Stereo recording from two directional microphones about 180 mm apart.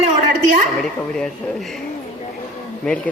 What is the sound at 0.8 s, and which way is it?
Speech, 5° left (ahead or behind).